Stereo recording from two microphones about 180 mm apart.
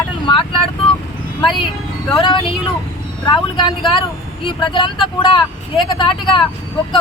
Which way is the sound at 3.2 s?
30° left (ahead or behind).